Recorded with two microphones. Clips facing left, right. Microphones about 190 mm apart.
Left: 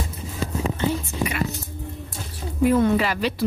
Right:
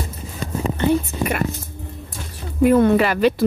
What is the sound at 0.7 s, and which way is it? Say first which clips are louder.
Speech: right 9 dB; 55° right (ahead or behind).